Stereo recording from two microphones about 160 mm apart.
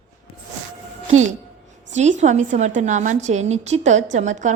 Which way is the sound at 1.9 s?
45° right (ahead or behind).